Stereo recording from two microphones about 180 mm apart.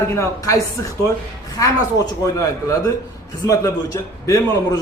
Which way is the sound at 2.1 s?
20° left (ahead or behind).